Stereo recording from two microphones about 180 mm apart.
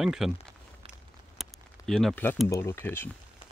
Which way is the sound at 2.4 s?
15° left (ahead or behind).